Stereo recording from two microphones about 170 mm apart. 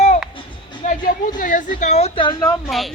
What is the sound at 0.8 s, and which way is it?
A woman's voice, 50° left (ahead or behind).